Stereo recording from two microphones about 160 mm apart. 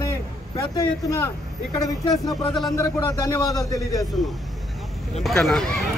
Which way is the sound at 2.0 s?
25° left (ahead or behind).